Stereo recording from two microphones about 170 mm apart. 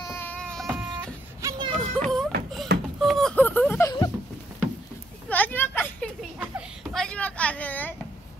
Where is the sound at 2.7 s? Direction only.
75° right (ahead or behind).